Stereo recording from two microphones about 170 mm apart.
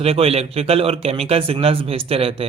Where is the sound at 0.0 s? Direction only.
35° right (ahead or behind).